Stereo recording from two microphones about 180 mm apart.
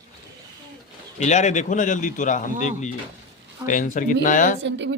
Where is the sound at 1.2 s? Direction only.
40° left (ahead or behind).